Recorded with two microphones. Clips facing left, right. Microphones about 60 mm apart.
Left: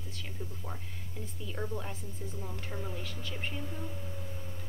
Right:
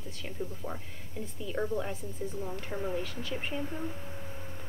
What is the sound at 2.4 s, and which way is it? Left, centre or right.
Speech, right.